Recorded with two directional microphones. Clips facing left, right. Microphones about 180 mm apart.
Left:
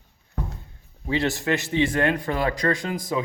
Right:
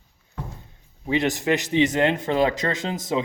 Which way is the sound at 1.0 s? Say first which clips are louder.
Right 2 dB; 20° right (ahead or behind).